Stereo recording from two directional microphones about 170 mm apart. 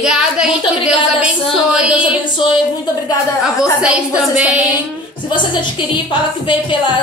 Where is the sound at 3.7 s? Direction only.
5° right (ahead or behind).